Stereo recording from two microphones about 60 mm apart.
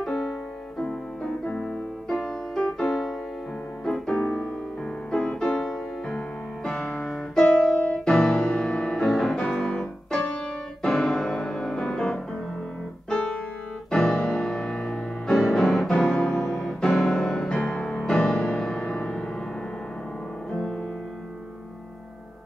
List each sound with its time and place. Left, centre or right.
0.0 s keyboard: centre
4.2 s music: left
5.1 s music: centre
7.8 s music: centre
9.0 s music: centre
13.8 s music: centre